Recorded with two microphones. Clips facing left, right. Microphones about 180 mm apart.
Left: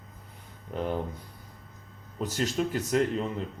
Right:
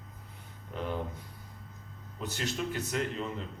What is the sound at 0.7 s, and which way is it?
Speech, 40° left (ahead or behind).